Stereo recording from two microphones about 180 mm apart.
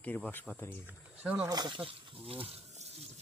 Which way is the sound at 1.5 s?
25° right (ahead or behind).